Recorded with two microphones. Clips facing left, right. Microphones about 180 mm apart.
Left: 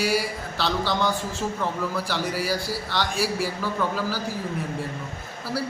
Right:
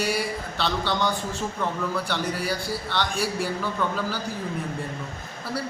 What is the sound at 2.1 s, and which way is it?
A man's voice, 5° left (ahead or behind).